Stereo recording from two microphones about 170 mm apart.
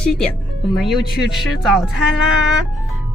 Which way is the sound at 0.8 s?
Centre (ahead or behind).